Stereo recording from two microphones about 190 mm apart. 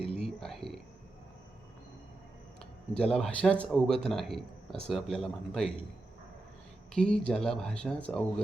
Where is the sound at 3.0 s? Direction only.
5° left (ahead or behind).